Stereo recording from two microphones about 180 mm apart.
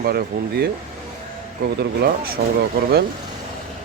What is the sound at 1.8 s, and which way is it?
Speech, 60° right (ahead or behind).